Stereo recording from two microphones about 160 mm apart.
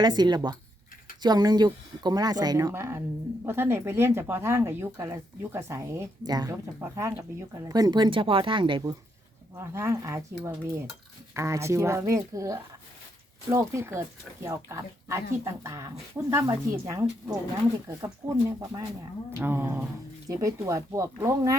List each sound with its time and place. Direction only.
0.0 s speech: 25° right (ahead or behind)
11.3 s speech: 20° right (ahead or behind)